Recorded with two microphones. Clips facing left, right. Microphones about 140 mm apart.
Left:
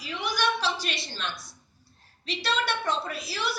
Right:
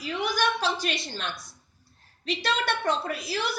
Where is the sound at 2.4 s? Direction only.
50° right (ahead or behind).